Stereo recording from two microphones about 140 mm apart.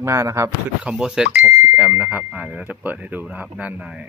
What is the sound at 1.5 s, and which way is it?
Speech, 20° right (ahead or behind).